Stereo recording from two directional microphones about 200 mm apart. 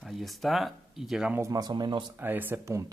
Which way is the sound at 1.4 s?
20° right (ahead or behind).